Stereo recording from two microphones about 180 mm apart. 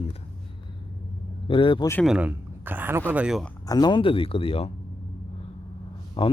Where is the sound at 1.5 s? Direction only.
30° left (ahead or behind).